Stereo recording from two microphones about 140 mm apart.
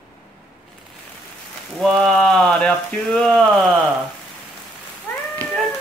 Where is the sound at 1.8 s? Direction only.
5° left (ahead or behind).